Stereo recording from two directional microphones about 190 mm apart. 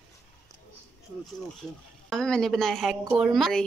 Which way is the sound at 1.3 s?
Centre (ahead or behind).